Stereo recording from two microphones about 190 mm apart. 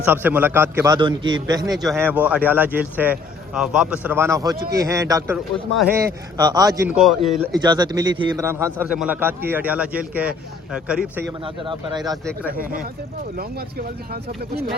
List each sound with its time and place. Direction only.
0.0 s a man's voice: 10° right (ahead or behind)
0.9 s a man's voice: 25° right (ahead or behind)
1.7 s a man's voice: centre (ahead or behind); by 6.9 s 20° right (ahead or behind)
6.9 s a man's voice: centre (ahead or behind)
7.6 s a man's voice: 20° right (ahead or behind); by 11.3 s 5° right (ahead or behind)
11.4 s a man's voice: 25° right (ahead or behind)
13.3 s speech: 55° right (ahead or behind)